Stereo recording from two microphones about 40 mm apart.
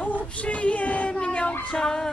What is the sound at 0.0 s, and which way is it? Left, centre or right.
Child singing, left.